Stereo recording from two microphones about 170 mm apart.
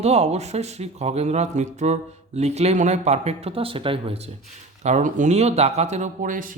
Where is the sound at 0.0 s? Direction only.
40° right (ahead or behind).